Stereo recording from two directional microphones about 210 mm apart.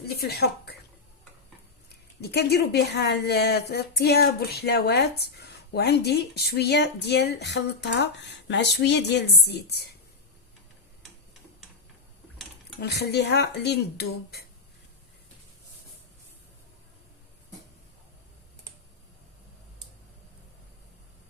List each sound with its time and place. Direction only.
0.2 s speech: 50° left (ahead or behind)
2.2 s a woman's voice: 50° left (ahead or behind)
12.8 s a woman's voice: 50° left (ahead or behind)